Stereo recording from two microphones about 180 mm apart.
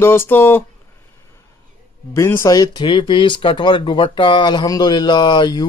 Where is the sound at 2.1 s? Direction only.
15° left (ahead or behind).